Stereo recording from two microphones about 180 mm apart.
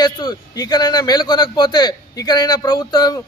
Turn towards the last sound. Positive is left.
turn(degrees=20)  # may be behind; listen again after turning